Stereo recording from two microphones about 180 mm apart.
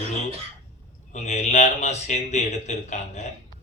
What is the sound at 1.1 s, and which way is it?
Speech, 40° left (ahead or behind).